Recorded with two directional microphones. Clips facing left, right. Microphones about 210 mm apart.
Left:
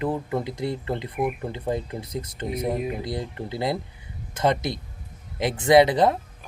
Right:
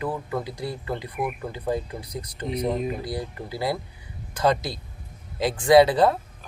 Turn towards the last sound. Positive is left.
turn(degrees=20)  # may be behind; listen again after turning